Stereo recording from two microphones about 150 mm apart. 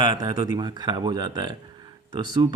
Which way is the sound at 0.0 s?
30° right (ahead or behind).